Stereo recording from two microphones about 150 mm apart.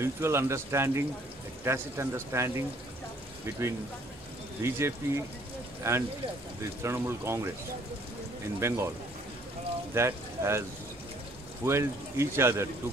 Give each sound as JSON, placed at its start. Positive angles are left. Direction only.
{"t": 0.0, "sound": "speech", "side_deg": -15}
{"t": 4.6, "sound": "speech", "side_deg": -20}
{"t": 8.5, "sound": "speech", "side_deg": -20}
{"t": 9.9, "sound": "speech", "side_deg": -15}
{"t": 11.6, "sound": "speech", "side_deg": -15}